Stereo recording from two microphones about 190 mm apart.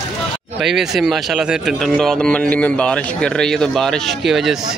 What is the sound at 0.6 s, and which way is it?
Speech, centre (ahead or behind).